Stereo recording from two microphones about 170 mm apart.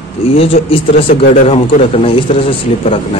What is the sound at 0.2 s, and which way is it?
Speech, 35° left (ahead or behind).